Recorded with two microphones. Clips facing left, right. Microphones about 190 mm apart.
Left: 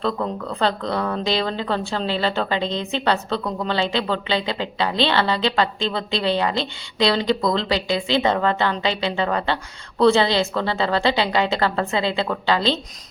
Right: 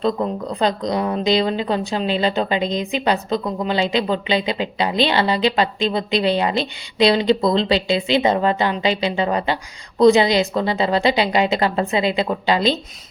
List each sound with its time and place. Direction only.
0.0 s speech: 15° right (ahead or behind)